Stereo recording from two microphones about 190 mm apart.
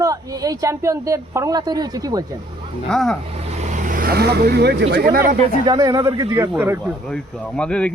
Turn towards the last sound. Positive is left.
turn(degrees=5)  # may be behind; listen again after turning